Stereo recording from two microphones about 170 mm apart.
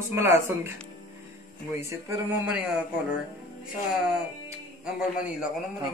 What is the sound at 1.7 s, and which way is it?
Speech, 10° right (ahead or behind).